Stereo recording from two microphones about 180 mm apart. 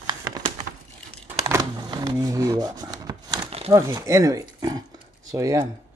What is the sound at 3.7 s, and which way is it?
Speech, 15° right (ahead or behind).